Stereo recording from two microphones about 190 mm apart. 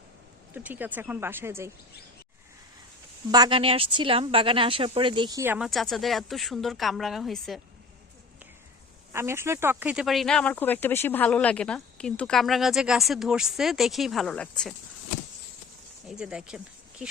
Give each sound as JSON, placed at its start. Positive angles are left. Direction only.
{"t": 0.5, "sound": "speech", "side_deg": -10}
{"t": 3.3, "sound": "speech", "side_deg": -25}
{"t": 5.4, "sound": "speech", "side_deg": -10}
{"t": 9.1, "sound": "speech", "side_deg": -15}
{"t": 16.0, "sound": "speech", "side_deg": -5}